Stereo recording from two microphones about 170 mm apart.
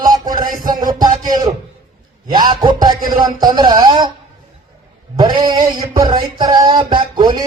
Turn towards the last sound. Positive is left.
turn(degrees=-25)  # may be behind; listen again after turning